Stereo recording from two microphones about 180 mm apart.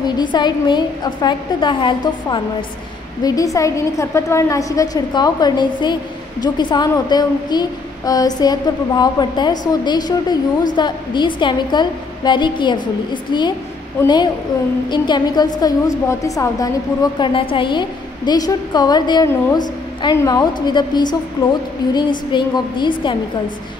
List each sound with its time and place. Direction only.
0.0 s a woman's voice: 25° left (ahead or behind)